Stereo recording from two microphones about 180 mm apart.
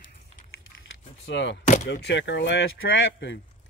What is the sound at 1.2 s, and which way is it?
Speech, 85° left.